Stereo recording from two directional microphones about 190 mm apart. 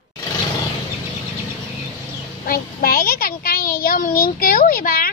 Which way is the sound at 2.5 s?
50° left (ahead or behind).